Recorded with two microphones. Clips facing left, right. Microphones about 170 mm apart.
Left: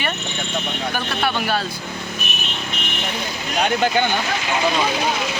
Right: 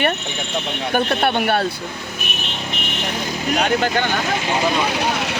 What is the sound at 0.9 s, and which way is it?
Speech, 55° right (ahead or behind).